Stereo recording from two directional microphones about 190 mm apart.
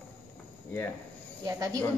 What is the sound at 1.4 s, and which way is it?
Speech, 20° right (ahead or behind).